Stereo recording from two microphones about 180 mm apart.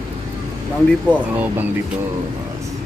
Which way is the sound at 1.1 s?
10° right (ahead or behind).